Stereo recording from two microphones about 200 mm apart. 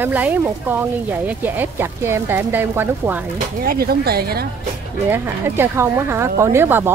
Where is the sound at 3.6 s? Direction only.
50° right (ahead or behind).